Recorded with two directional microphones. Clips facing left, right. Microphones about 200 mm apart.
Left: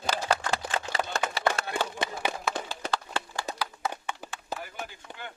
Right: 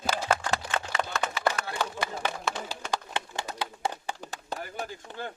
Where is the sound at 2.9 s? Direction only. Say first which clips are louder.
Left 1 dB; 20° right (ahead or behind).